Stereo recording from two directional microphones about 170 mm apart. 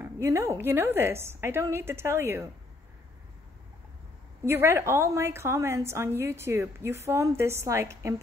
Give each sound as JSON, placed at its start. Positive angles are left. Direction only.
{"t": 0.0, "sound": "a woman's voice", "side_deg": -15}
{"t": 4.5, "sound": "a woman's voice", "side_deg": -15}